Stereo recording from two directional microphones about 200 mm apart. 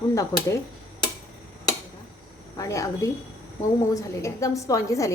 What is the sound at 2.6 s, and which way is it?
A woman's voice, 15° left (ahead or behind).